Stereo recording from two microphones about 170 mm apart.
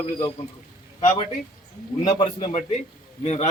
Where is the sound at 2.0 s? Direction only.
40° left (ahead or behind).